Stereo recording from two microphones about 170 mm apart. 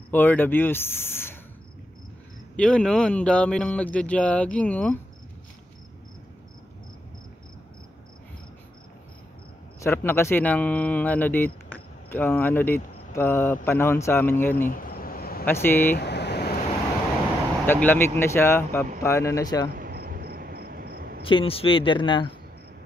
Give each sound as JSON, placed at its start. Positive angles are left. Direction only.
{"t": 0.1, "sound": "speech", "side_deg": 10}
{"t": 2.5, "sound": "speech", "side_deg": 5}
{"t": 9.8, "sound": "speech", "side_deg": 15}
{"t": 14.7, "sound": "a sound", "side_deg": 55}
{"t": 15.4, "sound": "speech", "side_deg": 15}
{"t": 16.0, "sound": "vehicle", "side_deg": 80}
{"t": 17.6, "sound": "speech", "side_deg": 10}
{"t": 19.7, "sound": "cricket", "side_deg": -60}
{"t": 21.2, "sound": "speech", "side_deg": 30}